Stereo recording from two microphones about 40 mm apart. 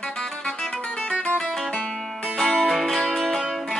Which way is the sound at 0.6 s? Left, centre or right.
Centre.